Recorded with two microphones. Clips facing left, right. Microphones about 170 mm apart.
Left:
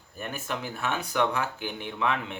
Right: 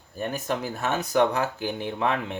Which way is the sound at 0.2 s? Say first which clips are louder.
Right 6 dB; 35° right (ahead or behind).